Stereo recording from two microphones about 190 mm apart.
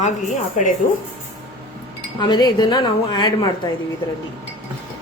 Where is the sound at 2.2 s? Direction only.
25° left (ahead or behind).